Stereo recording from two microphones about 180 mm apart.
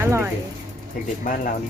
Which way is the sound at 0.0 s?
15° right (ahead or behind).